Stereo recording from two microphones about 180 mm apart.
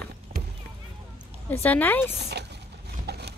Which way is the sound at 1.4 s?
10° left (ahead or behind).